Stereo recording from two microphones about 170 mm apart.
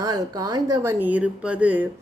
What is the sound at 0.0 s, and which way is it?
A woman's voice, 20° right (ahead or behind).